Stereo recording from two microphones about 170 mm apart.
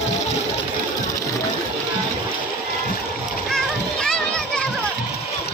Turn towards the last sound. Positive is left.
turn(degrees=5)  # may be behind; listen again after turning